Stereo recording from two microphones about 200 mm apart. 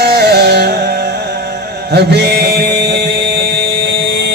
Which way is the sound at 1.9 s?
55° right (ahead or behind).